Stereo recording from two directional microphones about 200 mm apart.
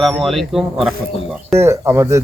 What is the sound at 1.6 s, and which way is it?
Speech, 10° right (ahead or behind).